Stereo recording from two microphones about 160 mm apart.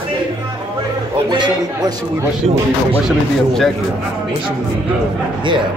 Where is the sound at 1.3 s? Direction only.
25° right (ahead or behind).